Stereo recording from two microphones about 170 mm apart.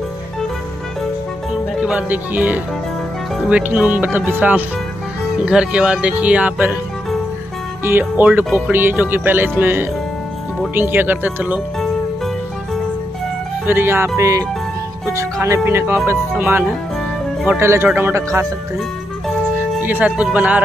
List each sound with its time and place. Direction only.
1.8 s speech: 5° right (ahead or behind)
7.8 s speech: 10° right (ahead or behind)
13.7 s speech: 15° right (ahead or behind)
19.8 s speech: 10° right (ahead or behind)